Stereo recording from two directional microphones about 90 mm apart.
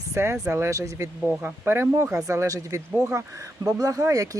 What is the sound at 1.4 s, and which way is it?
Speech, 25° right (ahead or behind).